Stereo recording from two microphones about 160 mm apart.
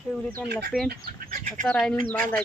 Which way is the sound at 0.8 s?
75° right (ahead or behind).